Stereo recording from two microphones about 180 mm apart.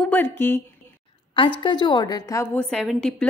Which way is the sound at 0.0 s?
10° left (ahead or behind).